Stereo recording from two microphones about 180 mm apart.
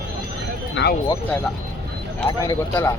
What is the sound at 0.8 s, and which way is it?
Speech, 85° left.